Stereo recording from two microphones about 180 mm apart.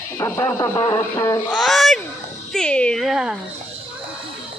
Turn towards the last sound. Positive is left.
turn(degrees=-5)  # may be behind; listen again after turning